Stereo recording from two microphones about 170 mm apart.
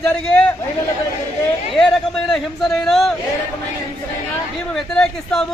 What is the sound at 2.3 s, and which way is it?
Speech, 5° left (ahead or behind).